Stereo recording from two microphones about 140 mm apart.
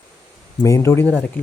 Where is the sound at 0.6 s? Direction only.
20° left (ahead or behind).